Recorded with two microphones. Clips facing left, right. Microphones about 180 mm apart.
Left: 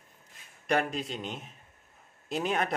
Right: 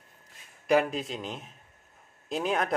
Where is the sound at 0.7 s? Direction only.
5° right (ahead or behind).